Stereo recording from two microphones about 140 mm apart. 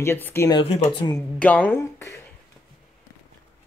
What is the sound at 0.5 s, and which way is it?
Speech, 45° left (ahead or behind).